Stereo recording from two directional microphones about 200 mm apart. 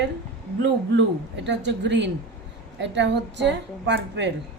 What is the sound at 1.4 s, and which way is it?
A woman's voice, 60° right (ahead or behind).